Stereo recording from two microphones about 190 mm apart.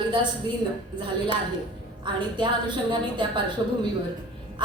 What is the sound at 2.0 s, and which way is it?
A woman's voice, 25° right (ahead or behind).